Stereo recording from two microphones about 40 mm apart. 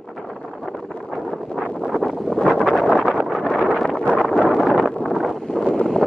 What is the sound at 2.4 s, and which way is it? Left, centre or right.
Wind noise, centre.